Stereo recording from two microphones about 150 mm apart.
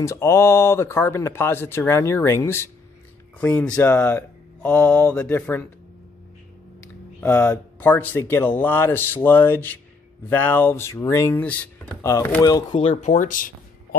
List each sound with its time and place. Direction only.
0.0 s speech: 20° left (ahead or behind)
7.2 s speech: 10° left (ahead or behind); by 12.8 s 25° left (ahead or behind)
12.8 s speech: 45° left (ahead or behind); by 13.5 s 60° left (ahead or behind)